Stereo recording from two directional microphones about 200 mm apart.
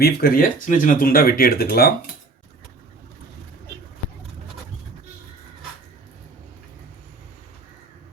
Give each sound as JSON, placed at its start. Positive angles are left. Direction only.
{"t": 0.0, "sound": "speech", "side_deg": 50}